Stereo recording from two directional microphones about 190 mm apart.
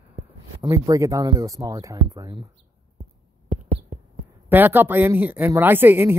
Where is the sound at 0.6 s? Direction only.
20° right (ahead or behind).